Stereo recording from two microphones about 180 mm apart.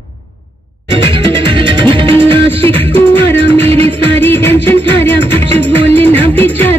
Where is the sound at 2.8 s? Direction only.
10° left (ahead or behind).